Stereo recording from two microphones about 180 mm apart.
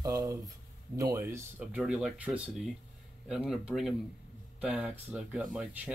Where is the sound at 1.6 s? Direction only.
5° right (ahead or behind).